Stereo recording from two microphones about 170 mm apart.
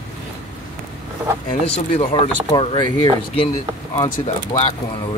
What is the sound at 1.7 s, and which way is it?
Speech, 30° left (ahead or behind).